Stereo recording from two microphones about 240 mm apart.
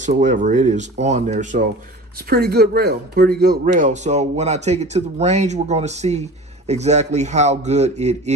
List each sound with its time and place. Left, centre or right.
0.0 s speech: right